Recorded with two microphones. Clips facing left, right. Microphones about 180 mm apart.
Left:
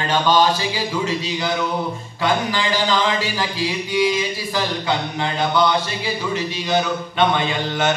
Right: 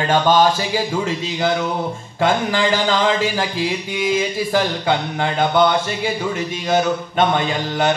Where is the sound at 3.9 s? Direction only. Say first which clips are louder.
Left 3 dB; 50° right (ahead or behind).